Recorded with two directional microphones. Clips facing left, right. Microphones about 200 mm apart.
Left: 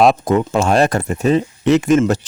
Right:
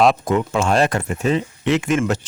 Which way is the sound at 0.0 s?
40° left (ahead or behind).